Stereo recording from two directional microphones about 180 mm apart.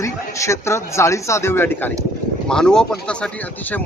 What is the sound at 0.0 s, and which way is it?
A man's voice, 15° left (ahead or behind).